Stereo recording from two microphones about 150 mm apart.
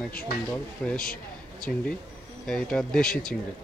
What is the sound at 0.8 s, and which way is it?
Speech, 5° left (ahead or behind).